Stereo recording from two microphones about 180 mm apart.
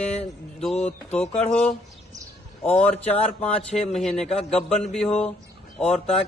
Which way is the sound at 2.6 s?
10° left (ahead or behind).